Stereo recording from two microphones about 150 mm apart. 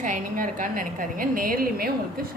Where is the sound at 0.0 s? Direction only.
60° right (ahead or behind).